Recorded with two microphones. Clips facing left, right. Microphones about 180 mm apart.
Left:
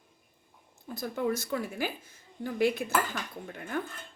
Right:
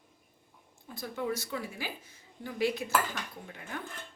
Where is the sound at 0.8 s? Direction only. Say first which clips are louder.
Left 4 dB; 45° left (ahead or behind).